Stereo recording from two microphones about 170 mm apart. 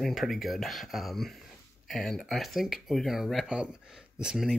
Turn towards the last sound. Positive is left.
turn(degrees=-5)  # may be behind; listen again after turning